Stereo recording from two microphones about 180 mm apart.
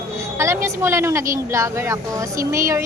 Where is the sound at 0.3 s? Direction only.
15° right (ahead or behind).